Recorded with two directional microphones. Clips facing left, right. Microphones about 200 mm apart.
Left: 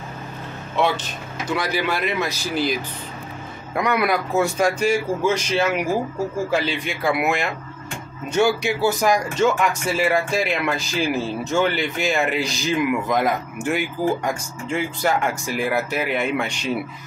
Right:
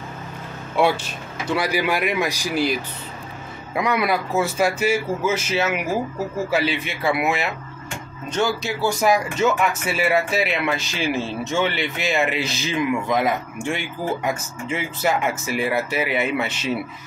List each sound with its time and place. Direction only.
0.7 s speech: 10° right (ahead or behind)
8.3 s speech: 10° left (ahead or behind)
8.9 s speech: 5° right (ahead or behind)